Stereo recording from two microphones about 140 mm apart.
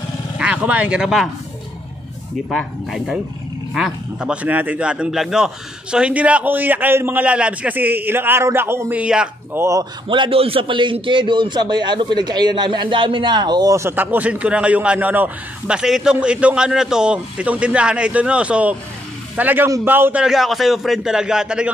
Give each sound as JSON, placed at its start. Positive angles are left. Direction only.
{"t": 0.4, "sound": "speech", "side_deg": -10}
{"t": 2.5, "sound": "a man's voice", "side_deg": 0}
{"t": 9.6, "sound": "a man's voice", "side_deg": -20}
{"t": 10.0, "sound": "a man's voice", "side_deg": -35}